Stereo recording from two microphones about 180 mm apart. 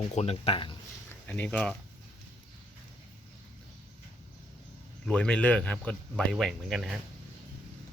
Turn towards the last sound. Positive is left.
turn(degrees=0)  # may be behind; listen again after turning